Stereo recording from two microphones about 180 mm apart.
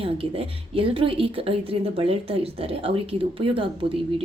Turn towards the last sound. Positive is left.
turn(degrees=-30)  # may be behind; listen again after turning